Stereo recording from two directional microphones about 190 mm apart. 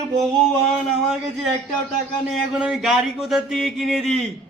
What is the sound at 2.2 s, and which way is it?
Speech, 5° right (ahead or behind).